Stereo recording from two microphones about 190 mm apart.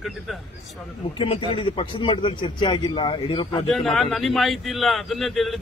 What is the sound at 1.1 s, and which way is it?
A man's voice, 25° left (ahead or behind).